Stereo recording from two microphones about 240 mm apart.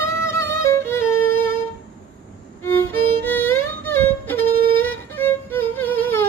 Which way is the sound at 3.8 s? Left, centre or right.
Centre.